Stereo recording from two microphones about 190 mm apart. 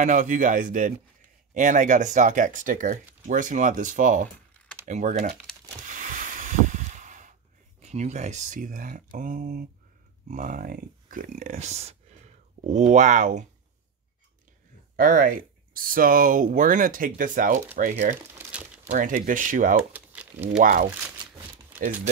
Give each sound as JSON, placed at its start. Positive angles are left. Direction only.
{"t": 0.0, "sound": "speech", "side_deg": -40}
{"t": 5.9, "sound": "a sound", "side_deg": -45}
{"t": 7.8, "sound": "speech", "side_deg": -35}
{"t": 15.0, "sound": "speech", "side_deg": -50}
{"t": 18.1, "sound": "speech", "side_deg": -10}
{"t": 18.9, "sound": "speech", "side_deg": -45}
{"t": 19.9, "sound": "crumpling", "side_deg": -10}
{"t": 20.5, "sound": "speech", "side_deg": -45}